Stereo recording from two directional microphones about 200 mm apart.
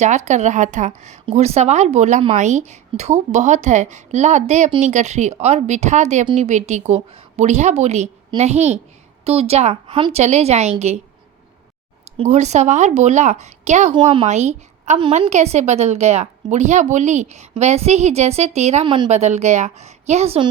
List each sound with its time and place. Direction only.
0.0 s speech: 35° right (ahead or behind)
12.1 s speech: 35° right (ahead or behind)
13.9 s speech: 25° right (ahead or behind)
14.3 s a woman's voice: 35° right (ahead or behind)